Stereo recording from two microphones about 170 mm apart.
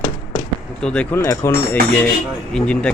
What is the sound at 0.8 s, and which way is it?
Speech, 5° left (ahead or behind).